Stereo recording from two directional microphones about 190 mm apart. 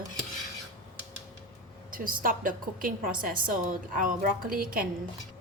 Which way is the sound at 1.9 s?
45° right (ahead or behind).